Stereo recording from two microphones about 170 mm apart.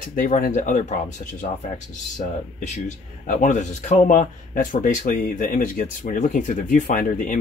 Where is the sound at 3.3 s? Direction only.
45° left (ahead or behind).